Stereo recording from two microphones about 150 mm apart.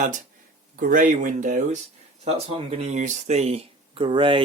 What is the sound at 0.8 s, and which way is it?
Speech, 60° right (ahead or behind).